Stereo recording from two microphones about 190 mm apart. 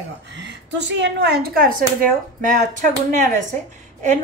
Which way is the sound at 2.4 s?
40° right (ahead or behind).